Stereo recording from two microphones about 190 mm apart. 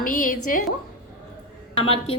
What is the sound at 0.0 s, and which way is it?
Speech, 45° left (ahead or behind).